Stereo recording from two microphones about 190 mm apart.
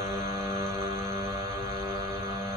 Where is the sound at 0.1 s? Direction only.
15° right (ahead or behind).